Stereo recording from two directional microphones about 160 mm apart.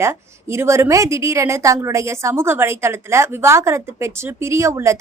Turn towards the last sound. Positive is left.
turn(degrees=-20)  # may be behind; listen again after turning